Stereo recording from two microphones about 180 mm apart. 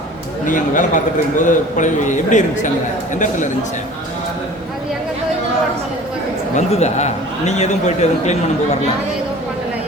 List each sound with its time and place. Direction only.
0.4 s a man's voice: 45° left (ahead or behind)
6.6 s a man's voice: 40° left (ahead or behind)